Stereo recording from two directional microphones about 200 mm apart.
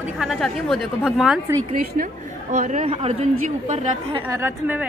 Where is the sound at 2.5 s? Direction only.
35° right (ahead or behind).